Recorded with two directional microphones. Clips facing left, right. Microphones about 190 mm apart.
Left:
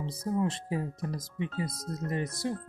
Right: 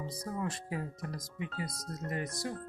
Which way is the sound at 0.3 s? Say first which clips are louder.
Left 8 dB; 25° left (ahead or behind).